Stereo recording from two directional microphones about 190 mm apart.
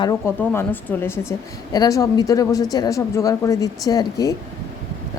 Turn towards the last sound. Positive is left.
turn(degrees=20)  # may be behind; listen again after turning